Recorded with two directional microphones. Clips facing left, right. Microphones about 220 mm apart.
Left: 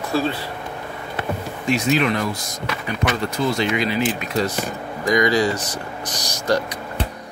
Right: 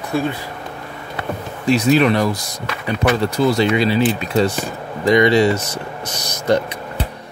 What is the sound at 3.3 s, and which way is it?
Speech, 35° right (ahead or behind).